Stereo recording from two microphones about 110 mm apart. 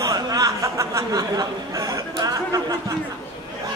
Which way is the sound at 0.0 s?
35° right (ahead or behind).